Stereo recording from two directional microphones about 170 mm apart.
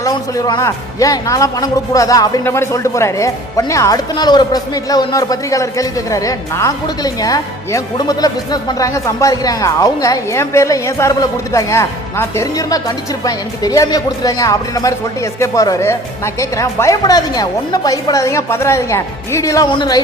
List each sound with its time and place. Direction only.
0.0 s a man's voice: 20° left (ahead or behind)